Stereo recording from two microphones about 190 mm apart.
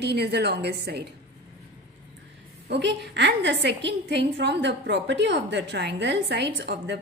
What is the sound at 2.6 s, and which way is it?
A woman's voice, 60° right (ahead or behind).